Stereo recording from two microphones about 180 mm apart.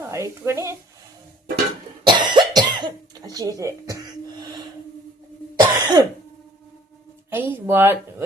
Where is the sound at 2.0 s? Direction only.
25° right (ahead or behind).